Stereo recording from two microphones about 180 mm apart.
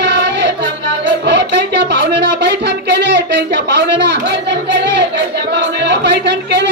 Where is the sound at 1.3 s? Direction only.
70° right (ahead or behind).